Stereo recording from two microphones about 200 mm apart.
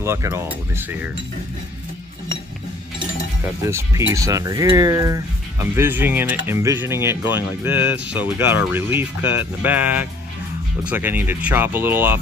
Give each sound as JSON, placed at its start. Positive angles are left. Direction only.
{"t": 0.0, "sound": "speech", "side_deg": -15}
{"t": 3.6, "sound": "speech", "side_deg": -15}